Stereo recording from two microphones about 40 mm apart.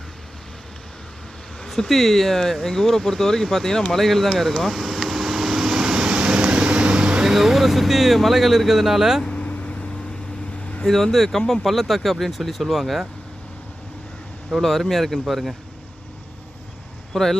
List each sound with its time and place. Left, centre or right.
1.6 s speech: centre
4.6 s vehicle: centre
7.3 s speech: centre
9.3 s vehicle: left
10.8 s speech: centre
14.5 s speech: centre
17.1 s speech: centre